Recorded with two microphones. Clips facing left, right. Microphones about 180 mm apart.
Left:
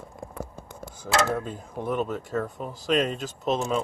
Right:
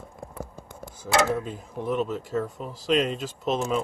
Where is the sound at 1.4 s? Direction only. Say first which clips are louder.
Even; centre (ahead or behind).